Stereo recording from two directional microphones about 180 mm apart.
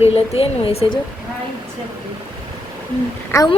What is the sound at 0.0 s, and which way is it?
Speech, 35° left (ahead or behind).